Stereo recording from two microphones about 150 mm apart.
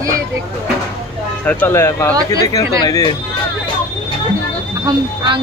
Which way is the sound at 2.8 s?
30° left (ahead or behind).